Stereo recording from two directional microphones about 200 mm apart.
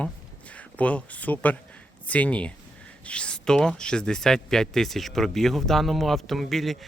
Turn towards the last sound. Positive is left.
turn(degrees=0)  # may be behind; listen again after turning